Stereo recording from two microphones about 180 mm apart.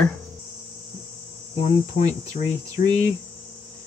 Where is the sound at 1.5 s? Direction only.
40° left (ahead or behind).